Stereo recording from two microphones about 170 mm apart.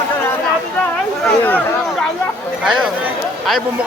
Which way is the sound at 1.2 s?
10° left (ahead or behind).